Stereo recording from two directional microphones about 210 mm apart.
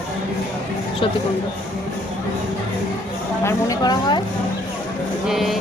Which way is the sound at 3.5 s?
15° left (ahead or behind).